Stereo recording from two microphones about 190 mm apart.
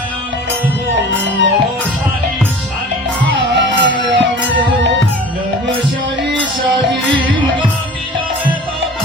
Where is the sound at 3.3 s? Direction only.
70° right (ahead or behind).